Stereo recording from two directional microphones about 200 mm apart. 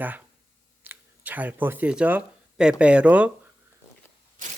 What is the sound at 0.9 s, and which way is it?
Speech, 10° right (ahead or behind).